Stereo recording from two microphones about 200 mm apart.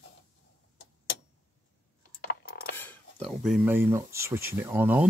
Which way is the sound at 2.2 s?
50° left (ahead or behind).